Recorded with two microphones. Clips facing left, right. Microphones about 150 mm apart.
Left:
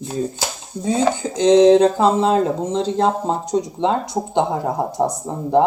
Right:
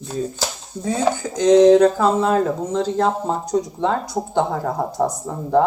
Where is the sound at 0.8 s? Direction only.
20° left (ahead or behind).